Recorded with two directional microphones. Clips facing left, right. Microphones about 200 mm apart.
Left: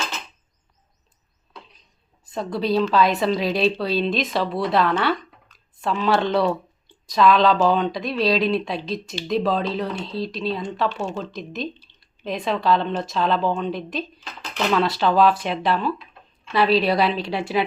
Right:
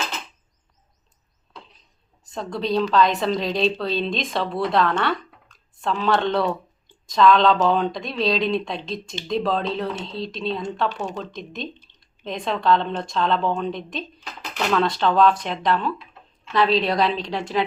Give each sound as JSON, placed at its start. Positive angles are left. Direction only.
{"t": 2.3, "sound": "speech", "side_deg": 5}
{"t": 10.8, "sound": "speech", "side_deg": -15}
{"t": 11.3, "sound": "speech", "side_deg": 0}